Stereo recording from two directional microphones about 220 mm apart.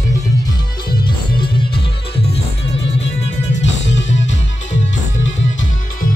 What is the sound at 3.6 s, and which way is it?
Music, 55° left (ahead or behind).